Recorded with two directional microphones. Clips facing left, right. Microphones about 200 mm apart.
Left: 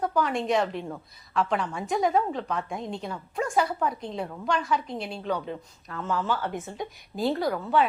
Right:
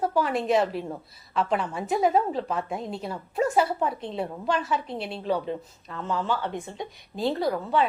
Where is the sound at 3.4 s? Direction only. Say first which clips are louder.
Right 3 dB; 25° right (ahead or behind).